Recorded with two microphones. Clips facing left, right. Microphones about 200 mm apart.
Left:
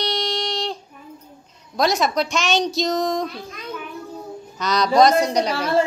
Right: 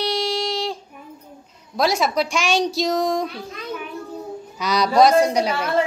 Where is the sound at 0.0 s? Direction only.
5° right (ahead or behind).